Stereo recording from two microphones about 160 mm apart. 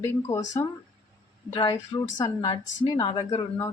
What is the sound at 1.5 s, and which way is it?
Speech, 30° left (ahead or behind).